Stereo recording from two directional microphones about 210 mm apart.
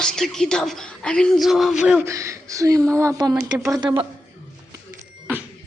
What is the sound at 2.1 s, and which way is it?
Speech, 15° right (ahead or behind).